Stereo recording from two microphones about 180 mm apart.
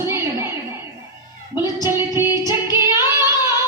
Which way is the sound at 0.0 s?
15° right (ahead or behind).